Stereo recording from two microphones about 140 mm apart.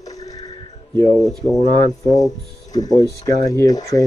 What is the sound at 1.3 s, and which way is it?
Speech, 5° left (ahead or behind).